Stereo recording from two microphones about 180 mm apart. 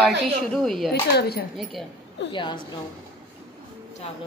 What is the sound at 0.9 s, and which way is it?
Speech, 65° left (ahead or behind).